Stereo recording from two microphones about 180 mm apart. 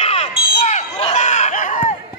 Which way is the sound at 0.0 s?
35° left (ahead or behind).